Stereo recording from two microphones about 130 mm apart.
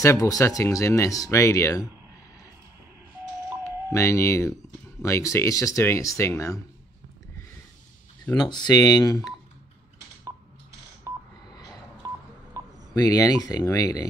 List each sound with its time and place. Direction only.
0.0 s speech: 25° left (ahead or behind)
3.9 s speech: 20° left (ahead or behind)
8.4 s speech: 35° left (ahead or behind)
12.9 s speech: 30° left (ahead or behind)